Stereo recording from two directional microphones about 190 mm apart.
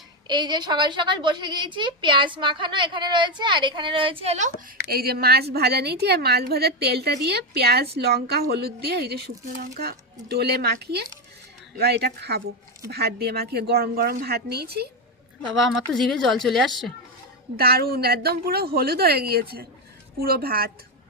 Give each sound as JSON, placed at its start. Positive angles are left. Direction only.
{"t": 0.3, "sound": "a woman's voice", "side_deg": -25}
{"t": 4.9, "sound": "a woman's voice", "side_deg": -55}
{"t": 15.4, "sound": "a woman's voice", "side_deg": 0}
{"t": 17.6, "sound": "a woman's voice", "side_deg": -55}